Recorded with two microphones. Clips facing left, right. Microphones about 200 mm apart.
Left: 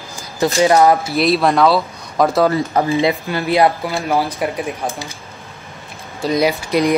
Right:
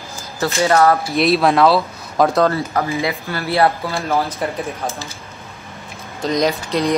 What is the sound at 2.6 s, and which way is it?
Speech, 25° left (ahead or behind).